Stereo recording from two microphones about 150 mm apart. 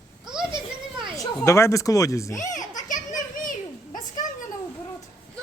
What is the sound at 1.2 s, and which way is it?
A man's voice, 20° left (ahead or behind).